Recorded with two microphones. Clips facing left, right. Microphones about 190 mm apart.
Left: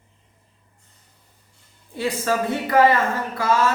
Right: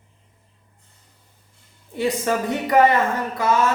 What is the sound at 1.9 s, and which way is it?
Speech, 20° right (ahead or behind).